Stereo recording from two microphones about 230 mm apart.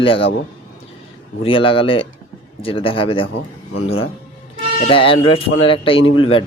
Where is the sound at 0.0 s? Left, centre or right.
Left.